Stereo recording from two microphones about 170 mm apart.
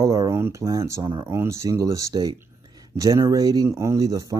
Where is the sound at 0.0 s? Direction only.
20° right (ahead or behind).